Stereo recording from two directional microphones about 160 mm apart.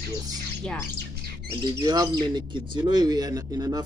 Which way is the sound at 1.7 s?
25° right (ahead or behind).